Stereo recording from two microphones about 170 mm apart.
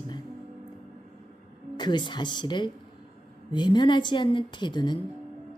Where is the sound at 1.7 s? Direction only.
25° left (ahead or behind).